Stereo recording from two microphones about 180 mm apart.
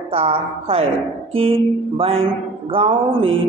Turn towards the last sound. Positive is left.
turn(degrees=-30)  # may be behind; listen again after turning